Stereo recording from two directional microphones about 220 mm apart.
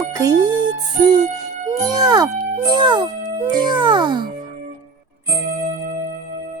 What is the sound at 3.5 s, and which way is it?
Music, 20° right (ahead or behind).